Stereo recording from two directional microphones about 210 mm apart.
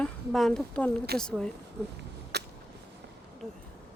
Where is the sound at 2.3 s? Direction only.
50° right (ahead or behind).